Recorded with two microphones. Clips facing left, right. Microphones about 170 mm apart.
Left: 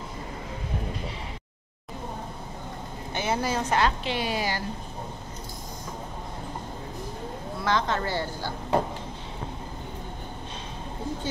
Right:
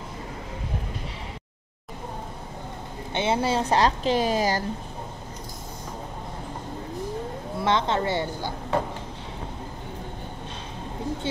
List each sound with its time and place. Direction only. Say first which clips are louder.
3.1 s speech: right 4 dB; 25° right (ahead or behind); by 4.6 s 40° right (ahead or behind)
7.6 s a woman's voice: right 3 dB; 25° right (ahead or behind)